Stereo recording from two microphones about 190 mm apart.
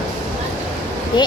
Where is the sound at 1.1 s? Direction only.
25° left (ahead or behind).